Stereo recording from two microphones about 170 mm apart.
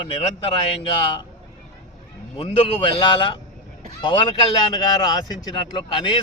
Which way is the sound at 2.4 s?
30° left (ahead or behind).